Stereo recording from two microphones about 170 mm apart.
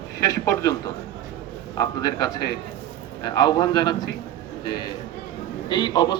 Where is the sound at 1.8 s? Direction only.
20° left (ahead or behind).